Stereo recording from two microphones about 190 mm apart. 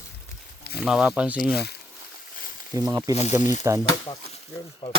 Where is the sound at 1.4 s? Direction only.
55° left (ahead or behind).